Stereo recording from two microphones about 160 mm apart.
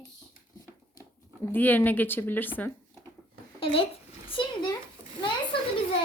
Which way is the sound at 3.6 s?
35° left (ahead or behind).